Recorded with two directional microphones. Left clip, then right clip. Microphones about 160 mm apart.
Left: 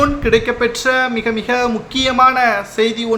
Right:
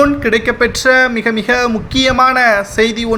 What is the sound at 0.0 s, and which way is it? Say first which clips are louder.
Speech: right 2 dB; 30° right (ahead or behind).